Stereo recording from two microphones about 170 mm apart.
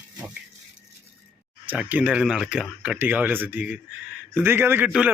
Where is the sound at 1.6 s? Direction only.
10° right (ahead or behind).